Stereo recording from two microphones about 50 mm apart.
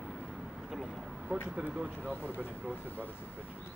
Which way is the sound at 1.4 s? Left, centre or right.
Centre.